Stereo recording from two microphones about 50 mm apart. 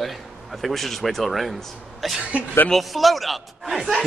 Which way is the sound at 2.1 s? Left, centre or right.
Right.